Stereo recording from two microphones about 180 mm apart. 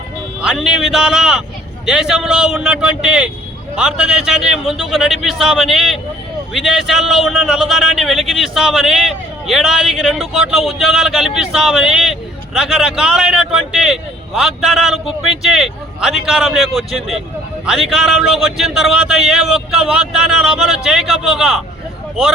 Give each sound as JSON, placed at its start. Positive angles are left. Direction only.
{"t": 0.4, "sound": "a man's voice", "side_deg": 0}